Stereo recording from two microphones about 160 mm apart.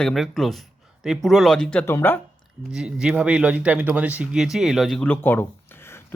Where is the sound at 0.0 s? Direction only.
Centre (ahead or behind).